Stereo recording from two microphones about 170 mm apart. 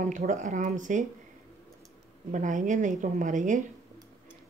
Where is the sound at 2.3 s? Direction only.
50° right (ahead or behind).